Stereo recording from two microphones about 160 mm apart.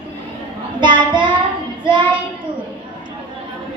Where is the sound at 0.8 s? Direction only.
30° right (ahead or behind).